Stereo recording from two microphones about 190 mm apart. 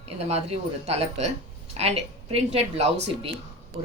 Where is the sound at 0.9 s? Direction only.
35° right (ahead or behind).